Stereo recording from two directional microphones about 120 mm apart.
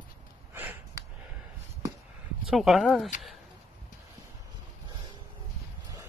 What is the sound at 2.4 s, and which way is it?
Speech, centre (ahead or behind).